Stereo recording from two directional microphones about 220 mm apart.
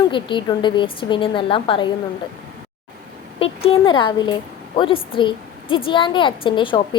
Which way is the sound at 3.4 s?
25° left (ahead or behind).